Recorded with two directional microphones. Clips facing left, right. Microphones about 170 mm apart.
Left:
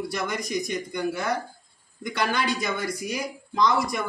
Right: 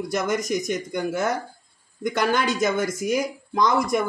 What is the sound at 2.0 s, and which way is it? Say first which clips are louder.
Speech: right 4 dB; 45° right (ahead or behind).